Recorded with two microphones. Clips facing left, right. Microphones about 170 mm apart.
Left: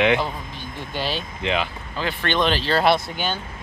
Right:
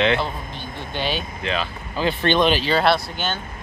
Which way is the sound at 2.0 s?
15° right (ahead or behind).